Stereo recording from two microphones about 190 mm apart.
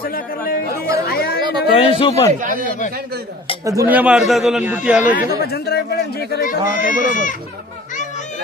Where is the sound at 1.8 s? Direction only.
30° left (ahead or behind).